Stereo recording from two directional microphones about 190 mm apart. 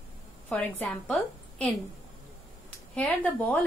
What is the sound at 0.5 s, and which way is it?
Speech, 5° left (ahead or behind).